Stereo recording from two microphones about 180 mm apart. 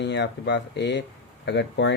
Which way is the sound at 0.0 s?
75° left (ahead or behind).